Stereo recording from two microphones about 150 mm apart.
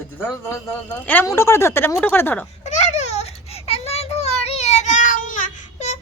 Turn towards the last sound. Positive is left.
turn(degrees=50)  # may be behind; listen again after turning